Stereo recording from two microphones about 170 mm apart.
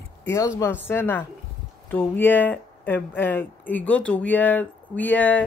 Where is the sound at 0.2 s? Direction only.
15° left (ahead or behind).